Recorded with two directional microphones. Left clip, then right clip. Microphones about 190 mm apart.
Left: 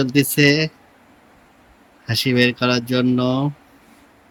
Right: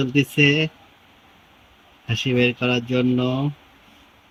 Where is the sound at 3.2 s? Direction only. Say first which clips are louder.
Left 3 dB; 15° left (ahead or behind).